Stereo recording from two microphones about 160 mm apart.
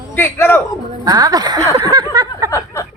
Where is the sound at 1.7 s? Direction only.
25° right (ahead or behind).